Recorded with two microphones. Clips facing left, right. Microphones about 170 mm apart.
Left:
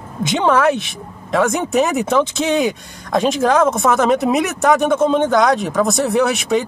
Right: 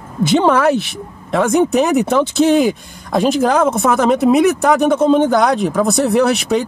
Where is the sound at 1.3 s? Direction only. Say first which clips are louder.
Right 3 dB; centre (ahead or behind).